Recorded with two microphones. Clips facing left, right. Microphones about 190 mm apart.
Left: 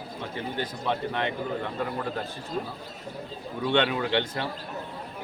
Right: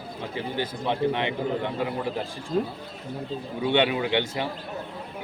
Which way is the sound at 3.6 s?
10° right (ahead or behind).